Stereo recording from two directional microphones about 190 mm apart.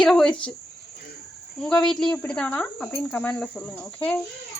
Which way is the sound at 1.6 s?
Centre (ahead or behind).